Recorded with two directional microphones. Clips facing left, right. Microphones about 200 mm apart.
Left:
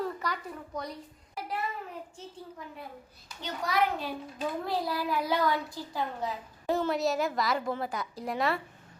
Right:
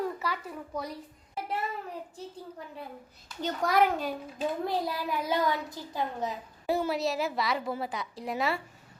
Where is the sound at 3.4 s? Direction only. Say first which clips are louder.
Right 4 dB; 45° right (ahead or behind).